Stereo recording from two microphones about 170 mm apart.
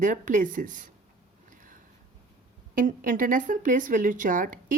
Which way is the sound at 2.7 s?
50° right (ahead or behind).